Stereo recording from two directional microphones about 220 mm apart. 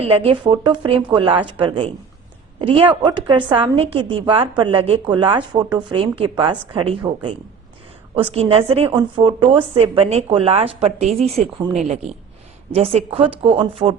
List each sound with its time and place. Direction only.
0.0 s a woman's voice: 25° right (ahead or behind)
12.7 s a woman's voice: 25° right (ahead or behind)